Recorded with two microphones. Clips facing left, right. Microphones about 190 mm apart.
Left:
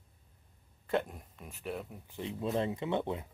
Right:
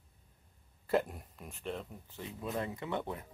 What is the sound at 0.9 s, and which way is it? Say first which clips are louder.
Speech: right 1 dB; centre (ahead or behind).